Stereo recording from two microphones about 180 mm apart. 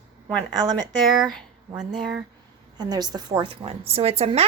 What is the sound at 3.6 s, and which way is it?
Speech, 35° right (ahead or behind).